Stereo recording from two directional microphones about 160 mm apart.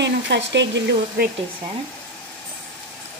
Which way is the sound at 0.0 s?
90° right.